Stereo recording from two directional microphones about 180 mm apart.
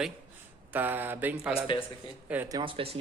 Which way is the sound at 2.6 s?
30° right (ahead or behind).